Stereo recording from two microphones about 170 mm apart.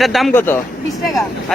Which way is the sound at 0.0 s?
Centre (ahead or behind).